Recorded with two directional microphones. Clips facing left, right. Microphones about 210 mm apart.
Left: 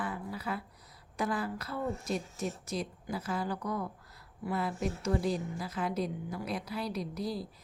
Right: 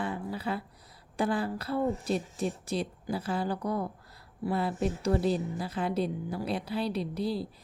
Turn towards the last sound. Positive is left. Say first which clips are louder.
# right 4 dB
turn(degrees=-30)  # may be behind; listen again after turning